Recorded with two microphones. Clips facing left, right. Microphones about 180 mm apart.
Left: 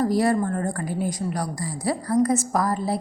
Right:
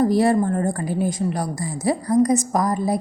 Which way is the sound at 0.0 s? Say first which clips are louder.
Right 4 dB; 25° right (ahead or behind).